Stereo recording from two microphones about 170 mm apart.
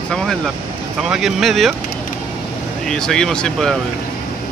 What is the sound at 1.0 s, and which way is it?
Speech, centre (ahead or behind).